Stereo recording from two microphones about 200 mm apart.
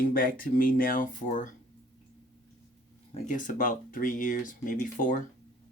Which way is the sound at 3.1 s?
40° left (ahead or behind).